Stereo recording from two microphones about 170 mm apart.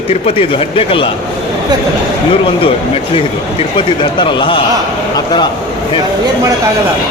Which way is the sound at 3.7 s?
30° left (ahead or behind).